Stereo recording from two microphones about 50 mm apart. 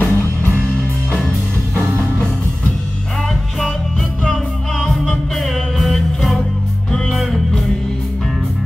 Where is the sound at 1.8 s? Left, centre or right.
Right.